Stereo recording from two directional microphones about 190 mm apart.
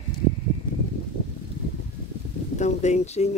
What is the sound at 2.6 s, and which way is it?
Speech, 35° left (ahead or behind).